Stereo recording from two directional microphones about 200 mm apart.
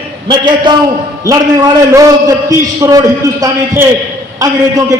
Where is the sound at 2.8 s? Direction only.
20° right (ahead or behind).